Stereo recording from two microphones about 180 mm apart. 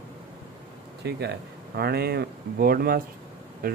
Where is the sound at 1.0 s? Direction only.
65° right (ahead or behind).